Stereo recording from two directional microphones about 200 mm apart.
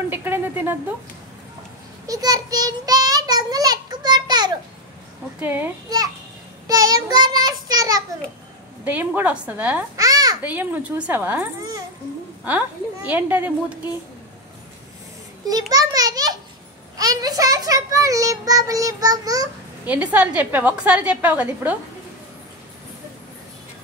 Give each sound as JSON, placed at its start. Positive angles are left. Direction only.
{"t": 0.1, "sound": "a sound", "side_deg": -10}
{"t": 2.0, "sound": "child singing", "side_deg": -20}
{"t": 5.4, "sound": "a child's voice", "side_deg": -10}
{"t": 6.7, "sound": "child singing", "side_deg": -20}
{"t": 8.8, "sound": "a child's voice", "side_deg": -10}
{"t": 12.4, "sound": "a child's voice", "side_deg": -10}
{"t": 15.7, "sound": "a child's voice", "side_deg": -20}
{"t": 19.9, "sound": "a child's voice", "side_deg": -5}